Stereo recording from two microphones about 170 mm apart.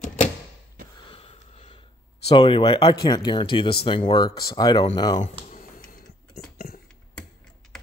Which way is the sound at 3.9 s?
30° left (ahead or behind).